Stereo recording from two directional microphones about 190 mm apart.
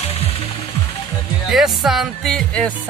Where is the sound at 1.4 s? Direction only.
Centre (ahead or behind).